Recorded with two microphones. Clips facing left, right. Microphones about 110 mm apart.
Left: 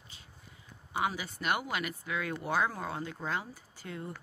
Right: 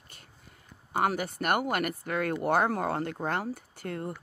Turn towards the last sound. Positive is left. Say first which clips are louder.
# right 6 dB
turn(degrees=-55)  # may be behind; listen again after turning